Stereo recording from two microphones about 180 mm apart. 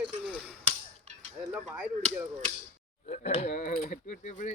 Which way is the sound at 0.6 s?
40° right (ahead or behind).